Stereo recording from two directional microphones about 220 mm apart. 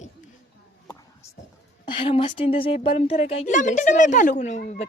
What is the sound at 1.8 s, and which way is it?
A woman's voice, 20° left (ahead or behind).